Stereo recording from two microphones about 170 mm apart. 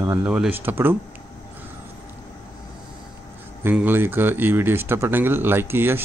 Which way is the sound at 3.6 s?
10° right (ahead or behind).